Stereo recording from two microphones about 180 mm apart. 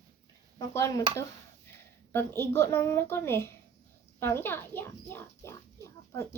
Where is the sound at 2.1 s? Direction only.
15° left (ahead or behind).